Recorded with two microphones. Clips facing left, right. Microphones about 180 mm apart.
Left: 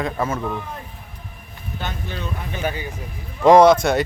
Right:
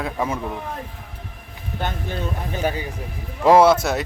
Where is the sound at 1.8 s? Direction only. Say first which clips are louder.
Right 3 dB; 50° right (ahead or behind).